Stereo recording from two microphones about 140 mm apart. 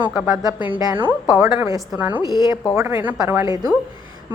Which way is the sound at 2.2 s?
30° left (ahead or behind).